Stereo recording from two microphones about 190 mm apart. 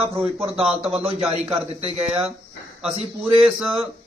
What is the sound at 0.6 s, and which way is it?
Speech, 5° right (ahead or behind).